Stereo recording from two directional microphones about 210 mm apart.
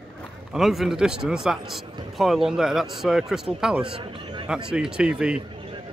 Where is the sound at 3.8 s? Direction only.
25° right (ahead or behind).